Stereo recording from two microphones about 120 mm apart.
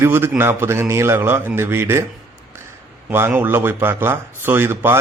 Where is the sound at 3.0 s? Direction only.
15° right (ahead or behind).